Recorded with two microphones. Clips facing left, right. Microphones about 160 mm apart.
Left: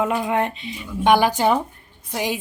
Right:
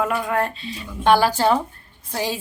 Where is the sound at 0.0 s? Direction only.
20° left (ahead or behind).